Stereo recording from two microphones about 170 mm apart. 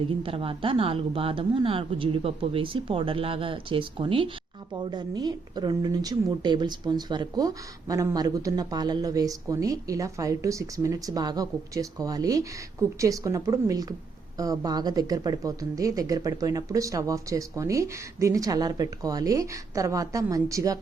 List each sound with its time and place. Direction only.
0.0 s a woman's voice: 30° right (ahead or behind)